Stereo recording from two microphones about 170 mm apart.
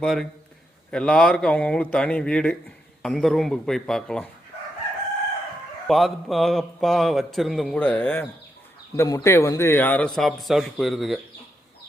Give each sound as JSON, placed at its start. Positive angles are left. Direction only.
{"t": 0.0, "sound": "a man's voice", "side_deg": 0}
{"t": 5.9, "sound": "a man's voice", "side_deg": 0}